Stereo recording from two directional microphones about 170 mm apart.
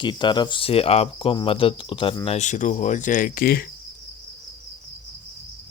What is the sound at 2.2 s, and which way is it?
Cricket, 45° left (ahead or behind).